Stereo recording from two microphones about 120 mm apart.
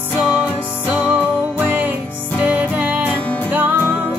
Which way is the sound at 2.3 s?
10° right (ahead or behind).